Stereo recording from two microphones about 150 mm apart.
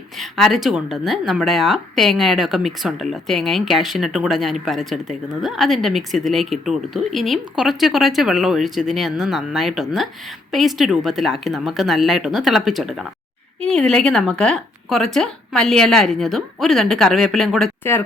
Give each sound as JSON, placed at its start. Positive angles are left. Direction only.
{"t": 0.2, "sound": "speech", "side_deg": 0}